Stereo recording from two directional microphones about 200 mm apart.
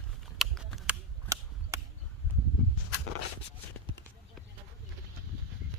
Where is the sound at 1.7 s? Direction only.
15° right (ahead or behind).